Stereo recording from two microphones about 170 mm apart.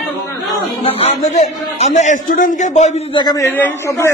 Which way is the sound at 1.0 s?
40° left (ahead or behind).